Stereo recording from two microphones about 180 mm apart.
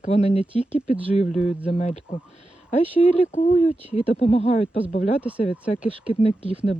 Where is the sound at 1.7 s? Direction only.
40° left (ahead or behind).